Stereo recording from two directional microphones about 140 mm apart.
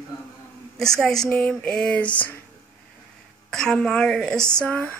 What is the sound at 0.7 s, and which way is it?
A woman's voice, 5° left (ahead or behind).